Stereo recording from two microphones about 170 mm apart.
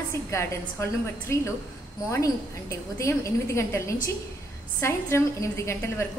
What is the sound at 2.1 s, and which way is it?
A woman's voice, 20° left (ahead or behind).